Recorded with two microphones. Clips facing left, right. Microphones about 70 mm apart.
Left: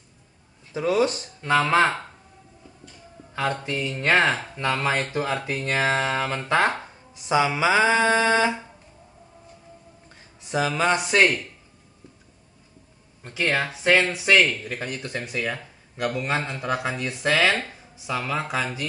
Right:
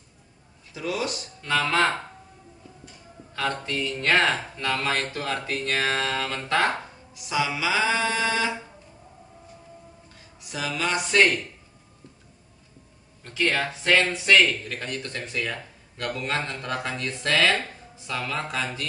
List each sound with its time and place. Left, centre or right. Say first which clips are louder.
0.7 s speech: left 7 dB; left
3.3 s speech: left 2 dB; centre
7.2 s a sound: left 5 dB; left
10.5 s a sound: left 6 dB; left
11.1 s speech: right 2 dB; centre
13.2 s speech: left 1 dB; centre